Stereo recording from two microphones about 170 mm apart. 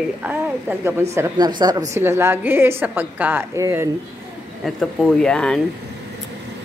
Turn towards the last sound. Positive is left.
turn(degrees=5)  # may be behind; listen again after turning